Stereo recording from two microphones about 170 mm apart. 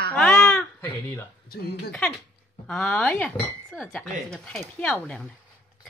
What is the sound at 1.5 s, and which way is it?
Speech, 70° left (ahead or behind).